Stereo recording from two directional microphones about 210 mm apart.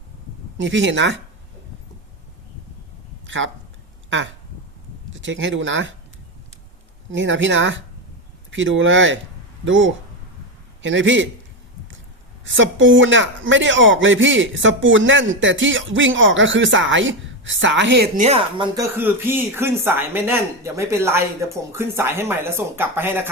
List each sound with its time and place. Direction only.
0.6 s speech: 60° right (ahead or behind)
3.2 s speech: 65° right (ahead or behind)
5.1 s speech: 60° right (ahead or behind)
7.1 s speech: 60° right (ahead or behind)
12.5 s speech: 65° right (ahead or behind)
18.2 s speech: 30° right (ahead or behind)
18.9 s speech: 10° right (ahead or behind)